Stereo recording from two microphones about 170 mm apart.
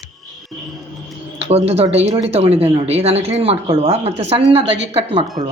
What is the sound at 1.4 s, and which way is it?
Speech, 35° right (ahead or behind).